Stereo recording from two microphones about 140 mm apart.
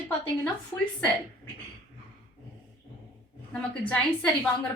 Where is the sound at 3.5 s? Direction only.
5° left (ahead or behind).